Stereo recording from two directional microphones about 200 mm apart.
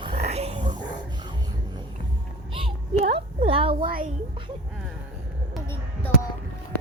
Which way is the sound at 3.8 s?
45° right (ahead or behind).